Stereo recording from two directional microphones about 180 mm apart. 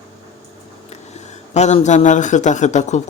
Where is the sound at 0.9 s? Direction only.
40° left (ahead or behind).